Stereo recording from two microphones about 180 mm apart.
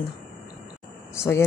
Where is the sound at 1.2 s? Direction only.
15° left (ahead or behind).